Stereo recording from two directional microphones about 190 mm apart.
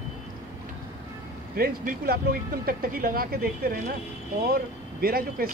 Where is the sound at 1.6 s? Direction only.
55° right (ahead or behind).